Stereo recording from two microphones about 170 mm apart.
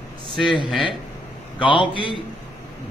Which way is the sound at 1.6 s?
30° left (ahead or behind).